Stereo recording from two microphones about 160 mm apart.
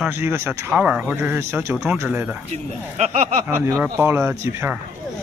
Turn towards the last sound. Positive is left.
turn(degrees=-15)  # may be behind; listen again after turning